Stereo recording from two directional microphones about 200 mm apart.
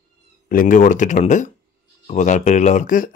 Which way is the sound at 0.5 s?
40° left (ahead or behind).